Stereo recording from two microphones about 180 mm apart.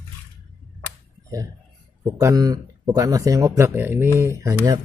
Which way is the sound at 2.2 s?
20° right (ahead or behind).